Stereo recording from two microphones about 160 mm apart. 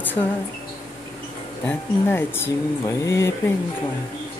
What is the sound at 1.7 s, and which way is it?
Speech, 15° left (ahead or behind).